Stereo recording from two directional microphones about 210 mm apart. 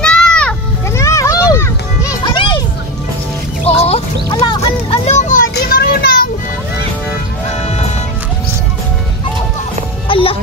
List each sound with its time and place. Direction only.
0.0 s children playing: 5° left (ahead or behind); by 2.6 s 25° left (ahead or behind)
3.8 s music: 30° left (ahead or behind)
4.6 s children playing: 30° left (ahead or behind); by 6.2 s 45° left (ahead or behind)
10.0 s music: 25° left (ahead or behind)